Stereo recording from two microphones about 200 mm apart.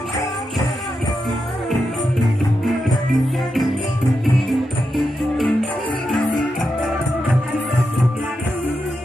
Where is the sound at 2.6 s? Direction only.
Centre (ahead or behind).